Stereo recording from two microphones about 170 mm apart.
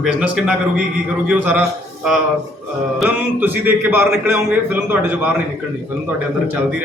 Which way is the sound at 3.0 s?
10° right (ahead or behind).